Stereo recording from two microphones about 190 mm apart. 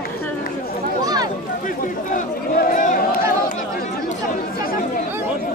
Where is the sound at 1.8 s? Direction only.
45° left (ahead or behind).